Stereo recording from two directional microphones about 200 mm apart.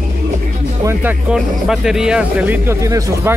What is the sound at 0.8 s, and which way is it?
Speech, 5° right (ahead or behind).